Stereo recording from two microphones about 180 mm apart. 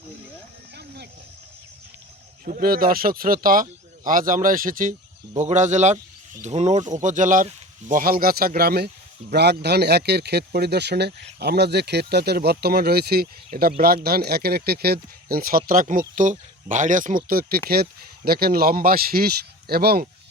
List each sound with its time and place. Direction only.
2.4 s speech: 50° right (ahead or behind)